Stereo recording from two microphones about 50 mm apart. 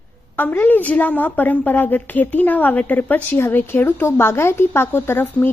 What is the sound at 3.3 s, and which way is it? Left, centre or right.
A woman's voice, left.